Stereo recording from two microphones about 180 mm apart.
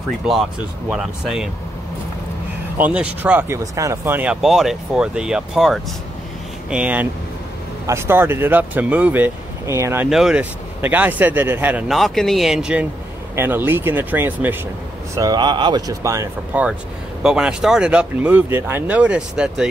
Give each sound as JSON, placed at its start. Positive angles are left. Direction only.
{"t": 0.8, "sound": "speech", "side_deg": -5}
{"t": 2.8, "sound": "speech", "side_deg": -5}
{"t": 10.0, "sound": "speech", "side_deg": -5}
{"t": 15.1, "sound": "speech", "side_deg": -20}
{"t": 17.2, "sound": "speech", "side_deg": -5}